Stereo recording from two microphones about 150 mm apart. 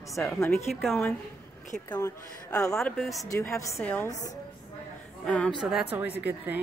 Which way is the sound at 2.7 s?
Centre (ahead or behind).